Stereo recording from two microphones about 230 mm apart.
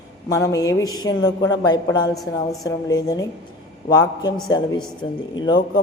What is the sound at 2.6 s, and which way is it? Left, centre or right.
A man's voice, centre.